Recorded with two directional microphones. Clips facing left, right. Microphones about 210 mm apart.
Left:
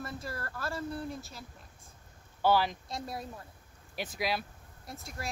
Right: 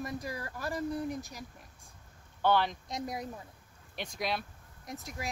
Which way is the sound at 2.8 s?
20° right (ahead or behind).